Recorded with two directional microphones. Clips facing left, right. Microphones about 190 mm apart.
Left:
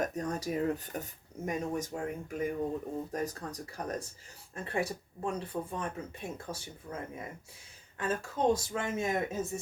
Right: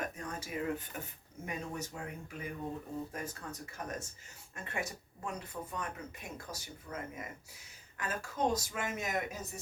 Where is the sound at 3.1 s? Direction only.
35° left (ahead or behind).